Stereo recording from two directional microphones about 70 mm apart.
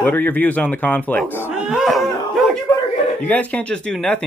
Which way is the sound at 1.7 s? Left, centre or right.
Centre.